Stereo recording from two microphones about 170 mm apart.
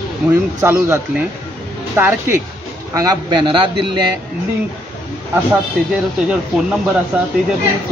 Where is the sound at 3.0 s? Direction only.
25° right (ahead or behind).